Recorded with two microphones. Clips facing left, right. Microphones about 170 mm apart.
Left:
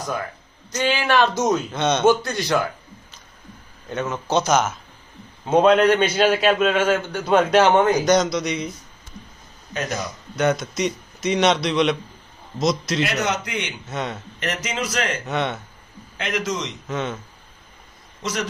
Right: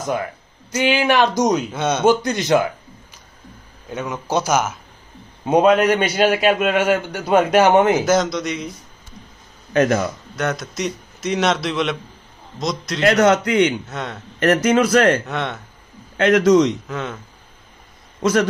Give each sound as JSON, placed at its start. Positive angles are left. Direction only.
{"t": 0.7, "sound": "a man's voice", "side_deg": -10}
{"t": 9.8, "sound": "a man's voice", "side_deg": -65}
{"t": 10.3, "sound": "a man's voice", "side_deg": 0}
{"t": 13.0, "sound": "a man's voice", "side_deg": -50}
{"t": 13.8, "sound": "a man's voice", "side_deg": 0}
{"t": 14.4, "sound": "a man's voice", "side_deg": -55}
{"t": 15.2, "sound": "a man's voice", "side_deg": 0}
{"t": 16.2, "sound": "a man's voice", "side_deg": -50}
{"t": 16.8, "sound": "a man's voice", "side_deg": 0}